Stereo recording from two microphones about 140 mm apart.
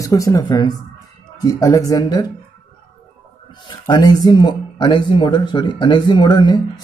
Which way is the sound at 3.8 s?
30° left (ahead or behind).